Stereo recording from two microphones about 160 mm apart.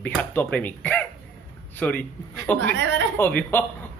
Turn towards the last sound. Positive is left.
turn(degrees=10)  # may be behind; listen again after turning